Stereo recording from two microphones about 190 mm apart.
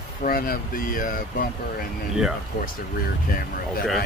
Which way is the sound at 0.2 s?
50° left (ahead or behind).